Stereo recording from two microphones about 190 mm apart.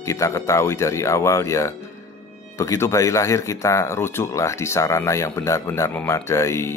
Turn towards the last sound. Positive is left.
turn(degrees=15)  # may be behind; listen again after turning